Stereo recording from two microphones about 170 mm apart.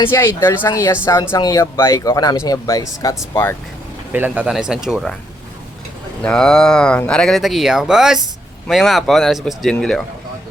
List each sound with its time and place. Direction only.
0.1 s speech: 15° left (ahead or behind)
4.1 s speech: 10° right (ahead or behind)
6.2 s speech: 5° left (ahead or behind)